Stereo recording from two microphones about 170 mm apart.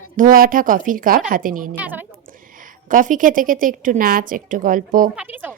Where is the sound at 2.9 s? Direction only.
50° right (ahead or behind).